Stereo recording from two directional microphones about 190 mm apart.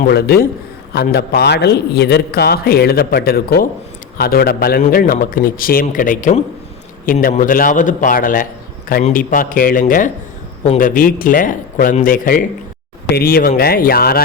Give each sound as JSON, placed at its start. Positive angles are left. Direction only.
{"t": 0.1, "sound": "a man's voice", "side_deg": 55}